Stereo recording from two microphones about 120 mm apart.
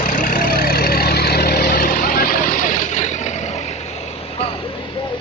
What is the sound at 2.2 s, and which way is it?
Vehicle, 90° left.